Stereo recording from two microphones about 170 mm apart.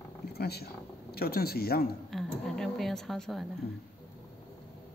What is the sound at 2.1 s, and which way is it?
Speech, centre (ahead or behind).